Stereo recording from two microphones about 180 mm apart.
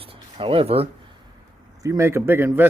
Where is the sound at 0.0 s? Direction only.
30° right (ahead or behind).